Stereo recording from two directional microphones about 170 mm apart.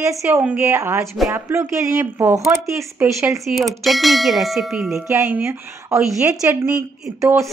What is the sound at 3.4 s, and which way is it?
Ding, centre (ahead or behind).